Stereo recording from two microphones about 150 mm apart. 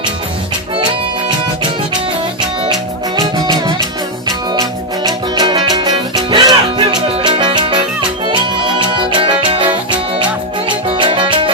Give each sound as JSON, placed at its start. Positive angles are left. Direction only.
{"t": 3.2, "sound": "music", "side_deg": -25}
{"t": 5.0, "sound": "music", "side_deg": -30}
{"t": 10.7, "sound": "music", "side_deg": -35}